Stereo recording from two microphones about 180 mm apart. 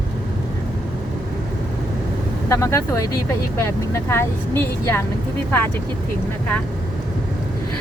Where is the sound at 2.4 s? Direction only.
15° left (ahead or behind).